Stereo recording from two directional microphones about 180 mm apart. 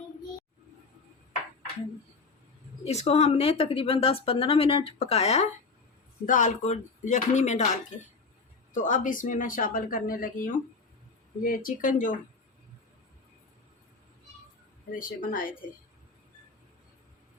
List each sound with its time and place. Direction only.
2.8 s a woman's voice: 35° left (ahead or behind)
14.9 s speech: 50° left (ahead or behind)